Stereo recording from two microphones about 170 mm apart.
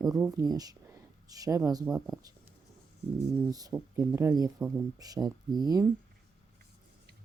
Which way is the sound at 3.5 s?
20° right (ahead or behind).